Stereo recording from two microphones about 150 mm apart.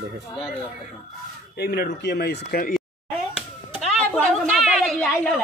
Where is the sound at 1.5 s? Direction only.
90° left.